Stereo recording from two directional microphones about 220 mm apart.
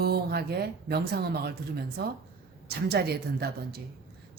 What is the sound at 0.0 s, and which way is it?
A woman's voice, 45° right (ahead or behind).